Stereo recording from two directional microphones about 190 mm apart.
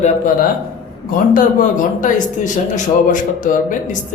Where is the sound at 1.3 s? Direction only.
45° left (ahead or behind).